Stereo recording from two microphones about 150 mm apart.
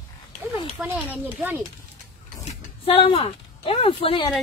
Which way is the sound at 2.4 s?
45° left (ahead or behind).